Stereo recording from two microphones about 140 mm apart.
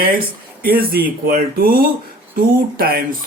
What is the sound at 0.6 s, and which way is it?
Speech, 90° right.